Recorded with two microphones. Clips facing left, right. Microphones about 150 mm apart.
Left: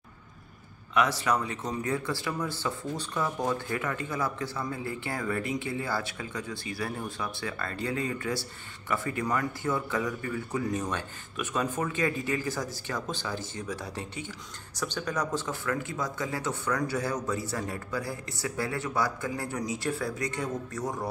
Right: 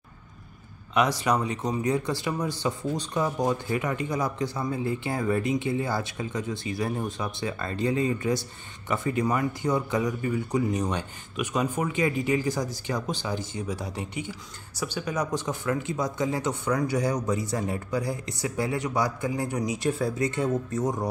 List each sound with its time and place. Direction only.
0.9 s speech: 15° right (ahead or behind)